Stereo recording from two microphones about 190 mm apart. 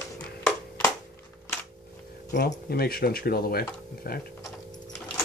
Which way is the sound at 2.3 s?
55° left (ahead or behind).